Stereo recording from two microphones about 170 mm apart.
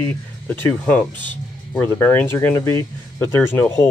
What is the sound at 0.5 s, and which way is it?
Speech, 10° left (ahead or behind).